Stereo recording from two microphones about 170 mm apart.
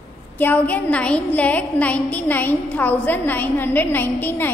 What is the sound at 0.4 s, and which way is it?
A woman's voice, 10° left (ahead or behind).